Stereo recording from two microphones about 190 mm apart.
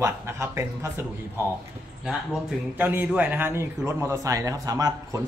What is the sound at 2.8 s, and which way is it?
A man's voice, 10° right (ahead or behind).